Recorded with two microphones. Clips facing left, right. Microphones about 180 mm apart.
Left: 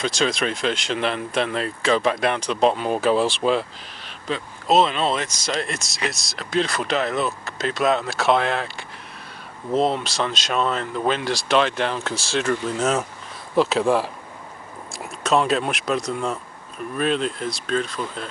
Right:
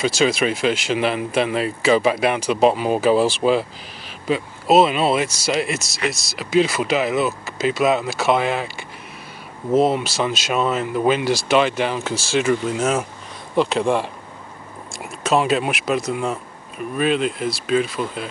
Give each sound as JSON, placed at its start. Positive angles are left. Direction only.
{"t": 0.0, "sound": "speech", "side_deg": -5}